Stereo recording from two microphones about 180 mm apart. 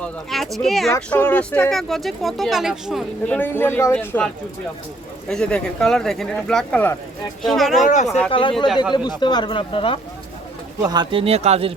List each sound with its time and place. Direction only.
0.0 s speech: centre (ahead or behind)
0.9 s speech: 15° left (ahead or behind)
3.3 s speech: 10° left (ahead or behind)
5.3 s speech: 5° left (ahead or behind)
8.3 s speech: 30° left (ahead or behind)
8.5 s speech: centre (ahead or behind)
8.9 s speech: 25° left (ahead or behind)
10.8 s speech: 25° right (ahead or behind)